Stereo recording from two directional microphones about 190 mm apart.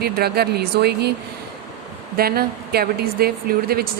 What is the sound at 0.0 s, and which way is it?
Speech, 55° right (ahead or behind).